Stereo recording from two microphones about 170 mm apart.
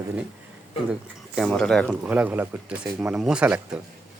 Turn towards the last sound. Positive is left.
turn(degrees=-5)  # may be behind; listen again after turning